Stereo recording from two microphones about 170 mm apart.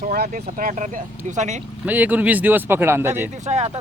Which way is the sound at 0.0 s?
60° right (ahead or behind).